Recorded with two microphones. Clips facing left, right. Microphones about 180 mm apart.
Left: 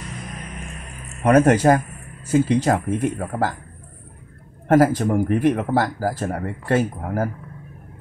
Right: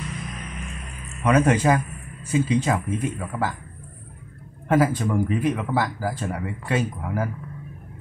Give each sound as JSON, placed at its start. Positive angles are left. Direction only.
{"t": 1.2, "sound": "speech", "side_deg": 45}
{"t": 2.3, "sound": "speech", "side_deg": 60}
{"t": 4.6, "sound": "speech", "side_deg": 45}
{"t": 5.7, "sound": "speech", "side_deg": 40}